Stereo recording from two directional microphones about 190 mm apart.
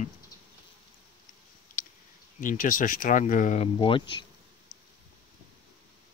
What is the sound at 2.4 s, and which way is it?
Speech, 45° left (ahead or behind).